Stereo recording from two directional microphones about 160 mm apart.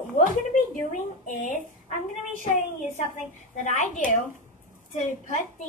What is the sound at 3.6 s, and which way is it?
Child singing, 50° left (ahead or behind).